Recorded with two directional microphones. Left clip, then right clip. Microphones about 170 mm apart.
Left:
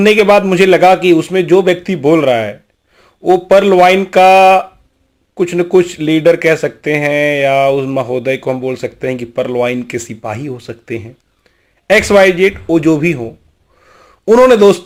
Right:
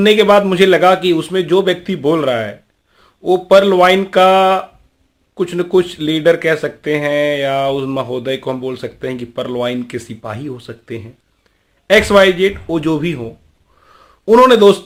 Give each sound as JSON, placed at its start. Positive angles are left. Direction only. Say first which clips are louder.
{"t": 0.0, "sound": "speech", "louder": "left 2 dB", "side_deg": 15}